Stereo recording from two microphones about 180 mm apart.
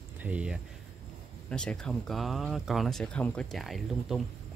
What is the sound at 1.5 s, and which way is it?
Speech, 5° left (ahead or behind).